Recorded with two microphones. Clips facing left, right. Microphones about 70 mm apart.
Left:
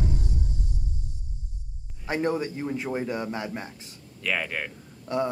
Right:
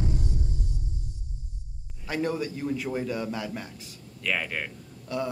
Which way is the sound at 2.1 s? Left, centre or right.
Left.